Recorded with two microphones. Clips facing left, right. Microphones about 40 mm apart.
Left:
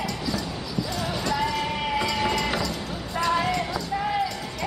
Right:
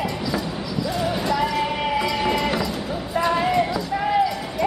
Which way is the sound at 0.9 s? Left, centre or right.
Centre.